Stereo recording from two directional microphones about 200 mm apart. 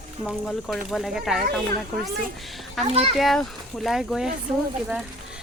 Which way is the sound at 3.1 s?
Centre (ahead or behind).